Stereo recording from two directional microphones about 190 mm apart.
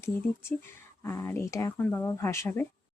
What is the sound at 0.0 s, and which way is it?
Speech, 15° left (ahead or behind).